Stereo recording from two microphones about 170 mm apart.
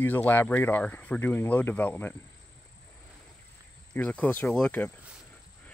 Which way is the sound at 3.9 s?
10° left (ahead or behind).